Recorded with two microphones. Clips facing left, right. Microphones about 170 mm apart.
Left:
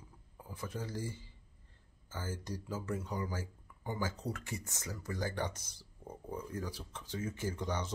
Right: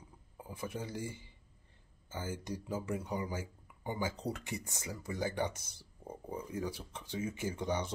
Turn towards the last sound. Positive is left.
turn(degrees=-10)  # may be behind; listen again after turning